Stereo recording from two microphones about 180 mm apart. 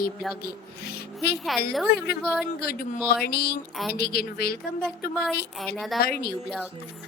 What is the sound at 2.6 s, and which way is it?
Speech, 55° left (ahead or behind).